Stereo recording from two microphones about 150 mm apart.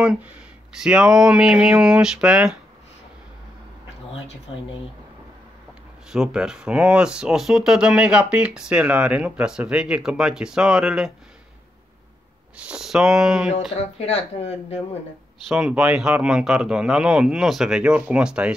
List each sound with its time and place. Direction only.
0.0 s speech: 5° right (ahead or behind)
4.1 s speech: 40° left (ahead or behind)
6.0 s speech: 5° right (ahead or behind)
12.6 s speech: 5° right (ahead or behind)
13.7 s speech: 45° left (ahead or behind)
15.4 s speech: 5° right (ahead or behind)